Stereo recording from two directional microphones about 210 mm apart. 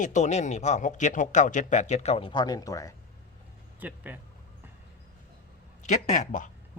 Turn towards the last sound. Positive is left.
turn(degrees=35)  # may be behind; listen again after turning